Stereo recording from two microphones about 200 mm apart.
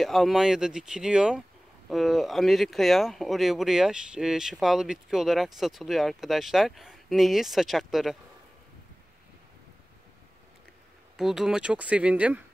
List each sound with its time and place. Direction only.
0.0 s speech: centre (ahead or behind)
11.1 s speech: centre (ahead or behind)